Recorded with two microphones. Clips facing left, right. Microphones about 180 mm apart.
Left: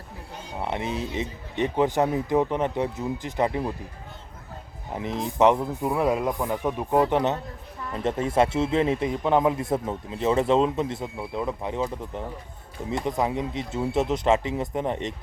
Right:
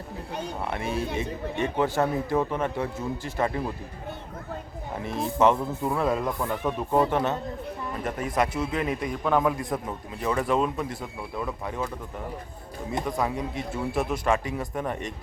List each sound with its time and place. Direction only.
0.6 s a man's voice: 20° left (ahead or behind)
4.9 s a man's voice: 20° left (ahead or behind)